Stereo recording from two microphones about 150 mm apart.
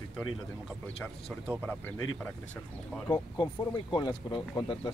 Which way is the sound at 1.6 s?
10° left (ahead or behind).